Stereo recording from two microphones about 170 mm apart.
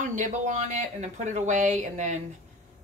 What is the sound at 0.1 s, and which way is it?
Speech, 45° right (ahead or behind).